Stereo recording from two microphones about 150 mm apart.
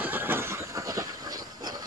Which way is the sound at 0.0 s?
10° right (ahead or behind).